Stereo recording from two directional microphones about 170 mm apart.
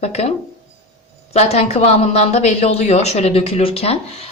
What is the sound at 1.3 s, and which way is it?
Speech, 40° left (ahead or behind).